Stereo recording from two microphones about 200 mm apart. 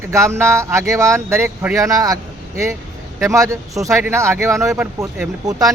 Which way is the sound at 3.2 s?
15° right (ahead or behind).